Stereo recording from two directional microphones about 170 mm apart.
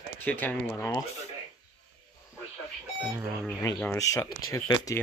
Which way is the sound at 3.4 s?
5° left (ahead or behind).